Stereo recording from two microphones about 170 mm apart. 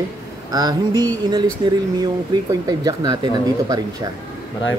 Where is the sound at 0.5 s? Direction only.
25° right (ahead or behind).